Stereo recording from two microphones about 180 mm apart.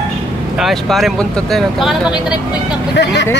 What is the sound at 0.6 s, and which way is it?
Speech, centre (ahead or behind).